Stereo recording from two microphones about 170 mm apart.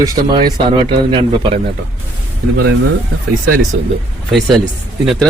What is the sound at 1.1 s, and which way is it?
Speech, 30° right (ahead or behind).